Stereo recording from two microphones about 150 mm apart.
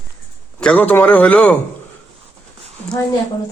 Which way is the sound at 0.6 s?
10° left (ahead or behind).